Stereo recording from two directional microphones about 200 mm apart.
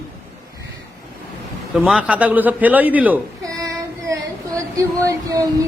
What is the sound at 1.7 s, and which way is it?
A man's voice, centre (ahead or behind).